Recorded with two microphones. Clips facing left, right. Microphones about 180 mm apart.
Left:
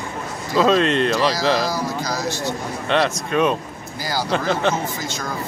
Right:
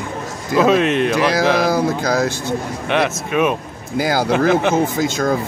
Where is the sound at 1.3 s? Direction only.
55° right (ahead or behind).